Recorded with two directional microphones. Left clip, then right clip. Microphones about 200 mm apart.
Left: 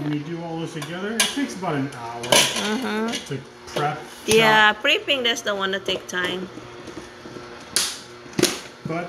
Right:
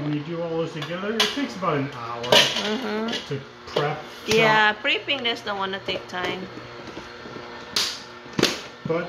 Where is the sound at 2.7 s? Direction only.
15° left (ahead or behind).